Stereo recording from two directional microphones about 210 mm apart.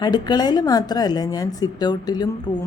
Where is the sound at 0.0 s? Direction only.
20° left (ahead or behind).